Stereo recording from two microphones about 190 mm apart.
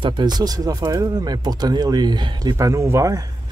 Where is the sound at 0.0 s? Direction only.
20° right (ahead or behind).